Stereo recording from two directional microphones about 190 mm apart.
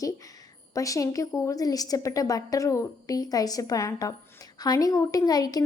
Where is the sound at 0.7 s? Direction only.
15° left (ahead or behind).